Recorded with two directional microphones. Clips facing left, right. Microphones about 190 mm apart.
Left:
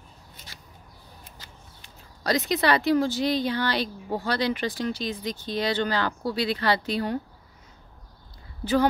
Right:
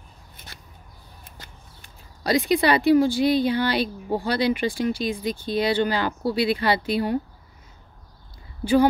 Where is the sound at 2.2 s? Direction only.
10° right (ahead or behind).